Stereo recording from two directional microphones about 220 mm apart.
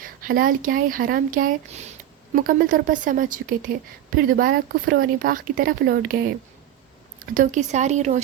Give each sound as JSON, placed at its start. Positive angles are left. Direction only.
{"t": 0.0, "sound": "speech", "side_deg": -40}
{"t": 7.2, "sound": "speech", "side_deg": -35}